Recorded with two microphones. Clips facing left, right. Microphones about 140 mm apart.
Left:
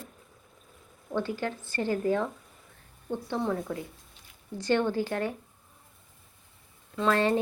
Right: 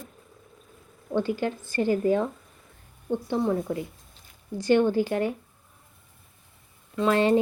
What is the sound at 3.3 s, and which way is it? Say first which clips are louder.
Speech: right 4 dB; 20° right (ahead or behind).